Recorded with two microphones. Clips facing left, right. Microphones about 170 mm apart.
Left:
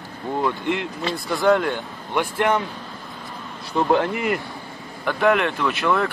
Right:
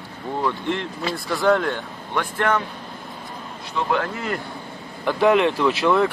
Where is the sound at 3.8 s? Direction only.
40° left (ahead or behind).